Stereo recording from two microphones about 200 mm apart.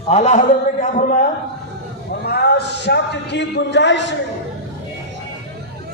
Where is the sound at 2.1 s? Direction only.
55° left (ahead or behind).